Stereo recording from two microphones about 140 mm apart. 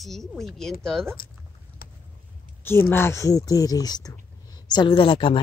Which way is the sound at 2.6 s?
15° left (ahead or behind).